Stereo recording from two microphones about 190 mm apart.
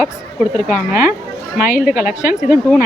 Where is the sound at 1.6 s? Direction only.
45° left (ahead or behind).